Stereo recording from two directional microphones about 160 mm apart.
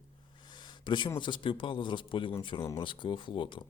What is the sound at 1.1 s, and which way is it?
Speech, 30° left (ahead or behind).